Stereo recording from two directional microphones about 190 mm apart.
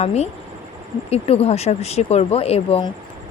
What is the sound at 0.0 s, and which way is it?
A woman's voice, 35° left (ahead or behind).